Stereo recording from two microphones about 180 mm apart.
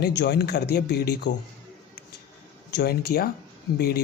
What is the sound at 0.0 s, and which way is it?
Speech, 65° left (ahead or behind).